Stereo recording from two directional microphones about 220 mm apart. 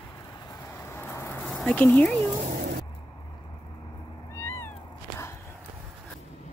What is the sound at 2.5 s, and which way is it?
Vehicle, 45° right (ahead or behind).